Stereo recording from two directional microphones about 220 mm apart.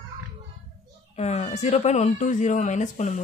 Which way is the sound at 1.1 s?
30° left (ahead or behind).